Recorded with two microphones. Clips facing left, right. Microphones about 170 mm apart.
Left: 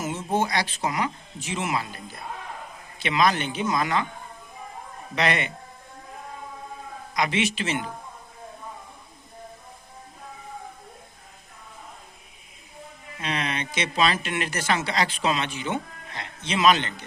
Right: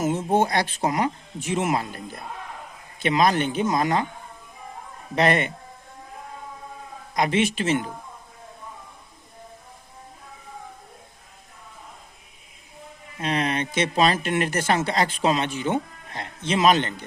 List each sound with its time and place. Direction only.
0.0 s speech: 50° right (ahead or behind)
5.1 s speech: 45° right (ahead or behind)
7.1 s speech: 45° right (ahead or behind)
13.2 s speech: 45° right (ahead or behind)